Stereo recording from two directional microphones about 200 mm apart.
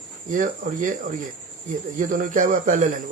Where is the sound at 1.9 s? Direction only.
40° right (ahead or behind).